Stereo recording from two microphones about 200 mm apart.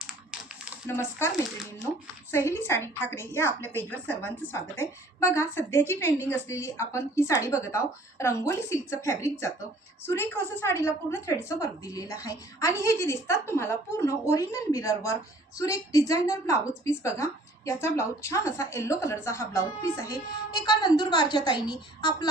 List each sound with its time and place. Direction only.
0.0 s typewriter: 5° right (ahead or behind)
0.9 s a woman's voice: 10° left (ahead or behind)
2.3 s a woman's voice: 10° left (ahead or behind)